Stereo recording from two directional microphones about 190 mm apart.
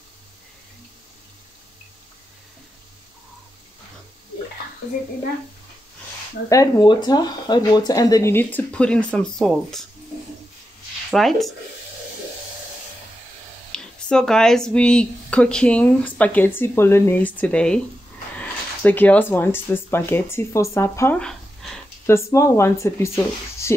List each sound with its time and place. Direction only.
6.5 s speech: 20° left (ahead or behind); by 9.8 s centre (ahead or behind)
11.1 s speech: centre (ahead or behind)
13.7 s speech: 5° left (ahead or behind)
21.2 s a sound: 5° left (ahead or behind)
22.1 s speech: 15° left (ahead or behind)